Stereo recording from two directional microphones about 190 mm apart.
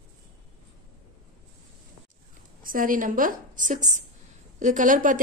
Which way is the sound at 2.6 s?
45° right (ahead or behind).